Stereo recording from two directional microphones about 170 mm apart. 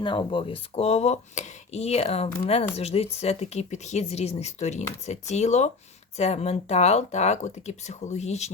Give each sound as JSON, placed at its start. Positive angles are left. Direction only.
{"t": 0.0, "sound": "speech", "side_deg": 30}